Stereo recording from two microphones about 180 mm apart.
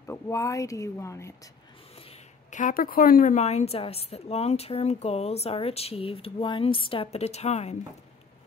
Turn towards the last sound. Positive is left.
turn(degrees=35)  # may be behind; listen again after turning